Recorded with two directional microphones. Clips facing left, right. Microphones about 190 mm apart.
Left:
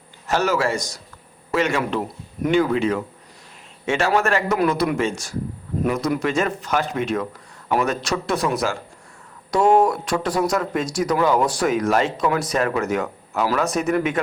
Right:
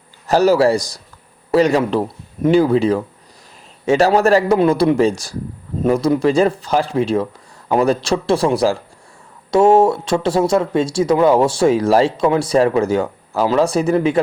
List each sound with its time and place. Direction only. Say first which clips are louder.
0.3 s speech: right 8 dB; 35° right (ahead or behind)